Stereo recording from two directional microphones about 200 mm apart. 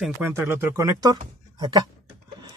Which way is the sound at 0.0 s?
10° right (ahead or behind).